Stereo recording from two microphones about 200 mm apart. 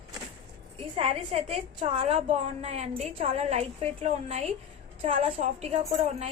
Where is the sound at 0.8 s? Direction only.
30° right (ahead or behind).